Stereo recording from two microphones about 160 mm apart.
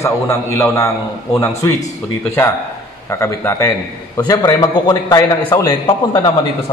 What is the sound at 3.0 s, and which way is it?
A man's voice, 15° left (ahead or behind).